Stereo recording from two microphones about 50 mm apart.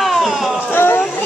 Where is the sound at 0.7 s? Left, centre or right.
Left.